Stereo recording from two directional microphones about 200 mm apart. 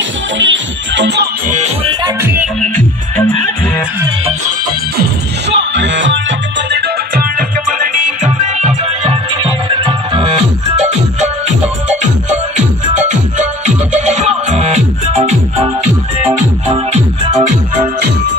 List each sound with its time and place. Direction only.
0.4 s music: 65° right (ahead or behind)
5.5 s music: 60° right (ahead or behind)
6.7 s music: 45° right (ahead or behind); by 10.4 s 25° right (ahead or behind)
12.9 s music: 35° right (ahead or behind)